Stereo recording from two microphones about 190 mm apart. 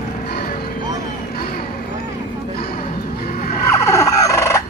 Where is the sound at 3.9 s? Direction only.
15° left (ahead or behind).